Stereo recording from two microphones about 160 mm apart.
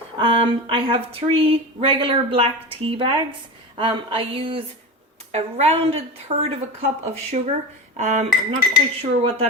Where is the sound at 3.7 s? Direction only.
30° right (ahead or behind).